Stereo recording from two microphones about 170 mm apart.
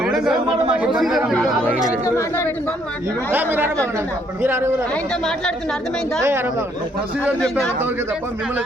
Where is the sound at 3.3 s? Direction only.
10° right (ahead or behind).